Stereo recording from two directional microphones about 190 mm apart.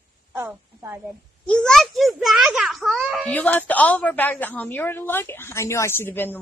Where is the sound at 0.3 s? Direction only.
10° right (ahead or behind).